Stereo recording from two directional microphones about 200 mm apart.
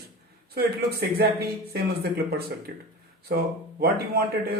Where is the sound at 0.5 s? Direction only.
50° right (ahead or behind).